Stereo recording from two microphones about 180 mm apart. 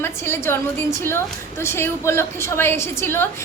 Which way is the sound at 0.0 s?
15° left (ahead or behind).